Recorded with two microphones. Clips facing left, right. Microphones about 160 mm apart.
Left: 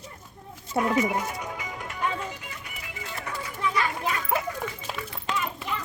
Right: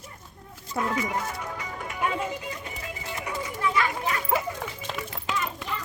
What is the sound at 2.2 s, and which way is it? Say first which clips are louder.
Music: right 5 dB; 25° right (ahead or behind).